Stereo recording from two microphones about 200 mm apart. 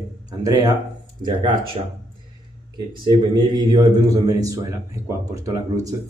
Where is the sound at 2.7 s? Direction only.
20° right (ahead or behind).